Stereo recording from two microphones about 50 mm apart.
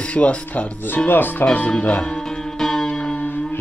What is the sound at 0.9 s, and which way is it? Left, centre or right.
Music, left.